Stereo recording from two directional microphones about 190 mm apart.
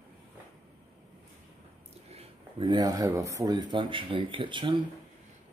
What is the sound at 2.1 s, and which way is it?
Speech, 25° right (ahead or behind).